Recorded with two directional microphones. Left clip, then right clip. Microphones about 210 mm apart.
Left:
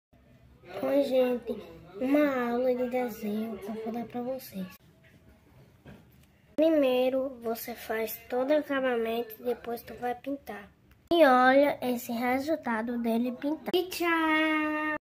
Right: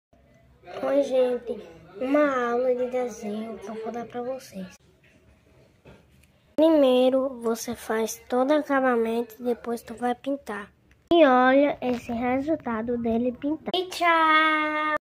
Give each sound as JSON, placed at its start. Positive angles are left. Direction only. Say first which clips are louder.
{"t": 0.7, "sound": "a woman's voice", "louder": "right 3 dB", "side_deg": 10}
{"t": 4.0, "sound": "speech", "louder": "right 3 dB", "side_deg": 10}
{"t": 6.6, "sound": "a woman's voice", "louder": "right 6 dB", "side_deg": -20}
{"t": 11.1, "sound": "a woman's voice", "louder": "right 3 dB", "side_deg": -5}
{"t": 13.7, "sound": "a child's voice", "louder": "right 7 dB", "side_deg": 5}